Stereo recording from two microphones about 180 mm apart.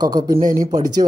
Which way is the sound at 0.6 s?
20° right (ahead or behind).